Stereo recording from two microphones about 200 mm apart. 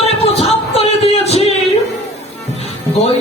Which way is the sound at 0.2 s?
30° left (ahead or behind).